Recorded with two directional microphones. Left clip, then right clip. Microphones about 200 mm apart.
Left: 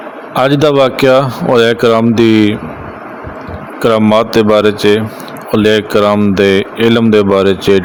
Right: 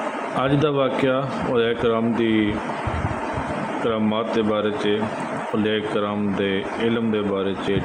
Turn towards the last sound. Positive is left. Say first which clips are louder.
# left 14 dB
turn(degrees=65)  # may be behind; listen again after turning